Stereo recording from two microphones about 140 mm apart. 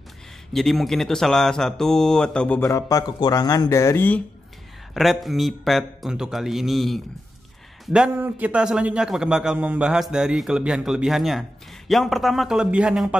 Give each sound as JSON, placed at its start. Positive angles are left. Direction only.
{"t": 0.5, "sound": "a man's voice", "side_deg": 0}
{"t": 2.6, "sound": "speech", "side_deg": 25}
{"t": 4.9, "sound": "a man's voice", "side_deg": 0}